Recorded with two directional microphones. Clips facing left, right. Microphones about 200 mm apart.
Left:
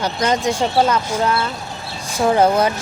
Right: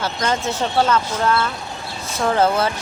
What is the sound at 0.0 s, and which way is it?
Speech, 15° left (ahead or behind).